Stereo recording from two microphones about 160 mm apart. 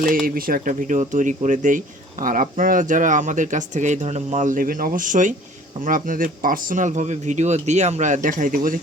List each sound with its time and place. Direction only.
0.3 s speech: 65° right (ahead or behind)